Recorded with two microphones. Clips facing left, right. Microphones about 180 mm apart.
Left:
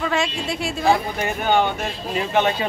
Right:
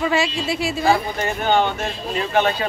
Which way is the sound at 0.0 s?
5° right (ahead or behind).